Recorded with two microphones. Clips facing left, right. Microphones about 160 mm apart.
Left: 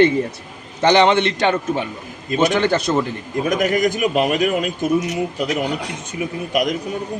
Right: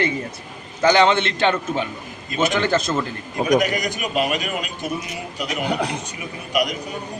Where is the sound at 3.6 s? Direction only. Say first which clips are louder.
Left 6 dB; 50° left (ahead or behind).